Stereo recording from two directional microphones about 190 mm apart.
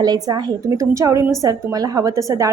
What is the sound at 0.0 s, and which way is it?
A woman's voice, 20° right (ahead or behind).